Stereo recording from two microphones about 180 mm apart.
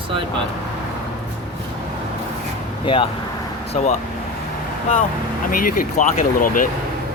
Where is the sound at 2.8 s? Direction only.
30° left (ahead or behind).